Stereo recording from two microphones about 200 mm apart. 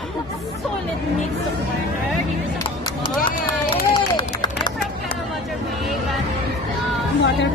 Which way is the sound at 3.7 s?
20° left (ahead or behind).